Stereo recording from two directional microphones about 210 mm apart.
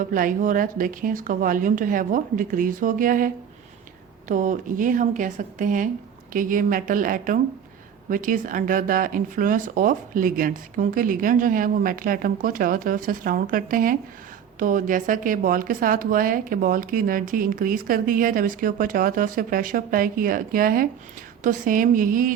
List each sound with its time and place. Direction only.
0.0 s a woman's voice: 40° right (ahead or behind)